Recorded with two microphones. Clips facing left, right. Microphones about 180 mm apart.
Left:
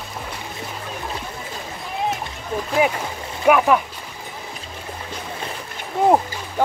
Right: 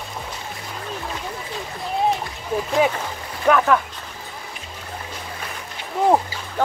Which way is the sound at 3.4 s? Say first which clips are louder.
Left 2 dB; 15° left (ahead or behind).